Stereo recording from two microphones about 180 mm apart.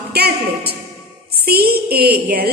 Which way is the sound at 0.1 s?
60° right (ahead or behind).